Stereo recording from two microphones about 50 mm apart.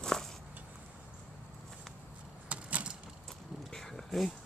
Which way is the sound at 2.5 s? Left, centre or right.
Right.